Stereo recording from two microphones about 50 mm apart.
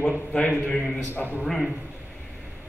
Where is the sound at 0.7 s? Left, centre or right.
Centre.